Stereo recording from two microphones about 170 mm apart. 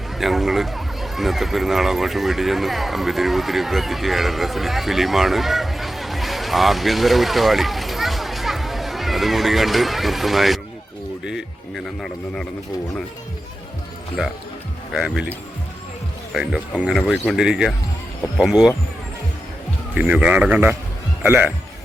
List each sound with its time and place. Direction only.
0.2 s speech: centre (ahead or behind)
14.2 s speech: 5° right (ahead or behind)
16.3 s speech: 5° right (ahead or behind)
19.9 s speech: 5° right (ahead or behind)